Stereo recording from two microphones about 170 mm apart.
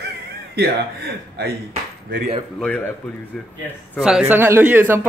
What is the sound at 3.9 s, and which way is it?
Speech, 5° right (ahead or behind).